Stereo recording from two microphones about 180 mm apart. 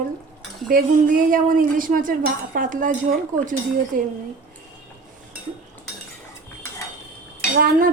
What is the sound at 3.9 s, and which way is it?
Speech, 50° right (ahead or behind).